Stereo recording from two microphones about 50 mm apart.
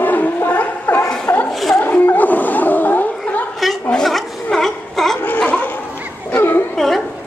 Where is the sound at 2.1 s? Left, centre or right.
Left.